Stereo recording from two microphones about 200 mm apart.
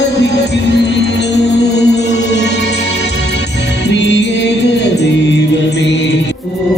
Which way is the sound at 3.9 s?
60° left (ahead or behind).